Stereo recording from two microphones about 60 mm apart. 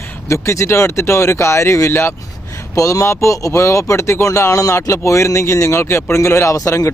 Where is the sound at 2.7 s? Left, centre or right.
Left.